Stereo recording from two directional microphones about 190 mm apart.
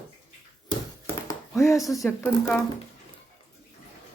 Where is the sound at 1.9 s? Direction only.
Centre (ahead or behind).